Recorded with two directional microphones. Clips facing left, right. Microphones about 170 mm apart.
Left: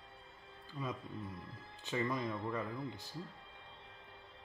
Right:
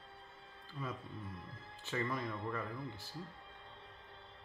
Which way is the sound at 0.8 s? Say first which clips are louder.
Left 2 dB; 15° left (ahead or behind).